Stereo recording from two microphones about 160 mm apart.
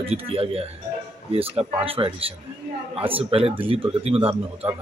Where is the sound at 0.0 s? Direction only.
35° right (ahead or behind).